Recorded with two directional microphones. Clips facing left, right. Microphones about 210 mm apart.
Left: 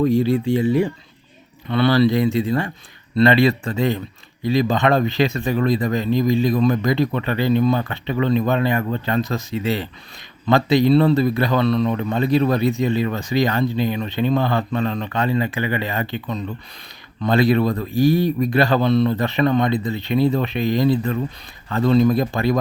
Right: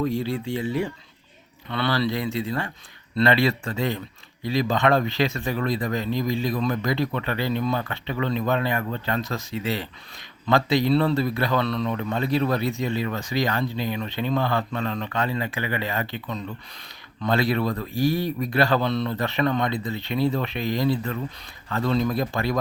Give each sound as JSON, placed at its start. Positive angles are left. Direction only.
{"t": 0.0, "sound": "speech", "side_deg": 15}